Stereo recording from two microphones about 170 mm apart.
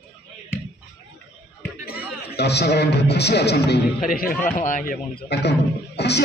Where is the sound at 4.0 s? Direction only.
60° left (ahead or behind).